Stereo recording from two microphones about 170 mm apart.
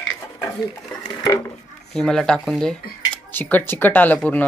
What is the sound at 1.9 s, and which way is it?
Speech, 5° left (ahead or behind).